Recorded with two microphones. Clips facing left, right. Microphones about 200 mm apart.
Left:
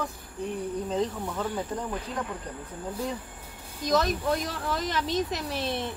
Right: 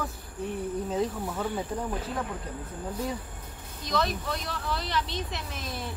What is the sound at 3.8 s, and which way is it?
Speech, 45° left (ahead or behind).